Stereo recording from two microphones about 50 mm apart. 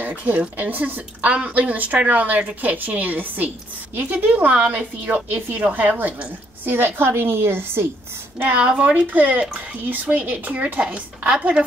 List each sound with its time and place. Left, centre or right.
0.0 s a woman's voice: right
5.9 s a woman's voice: right
8.5 s a woman's voice: right